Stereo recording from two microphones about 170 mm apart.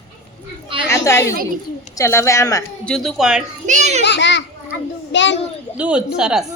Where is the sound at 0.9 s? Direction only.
15° left (ahead or behind).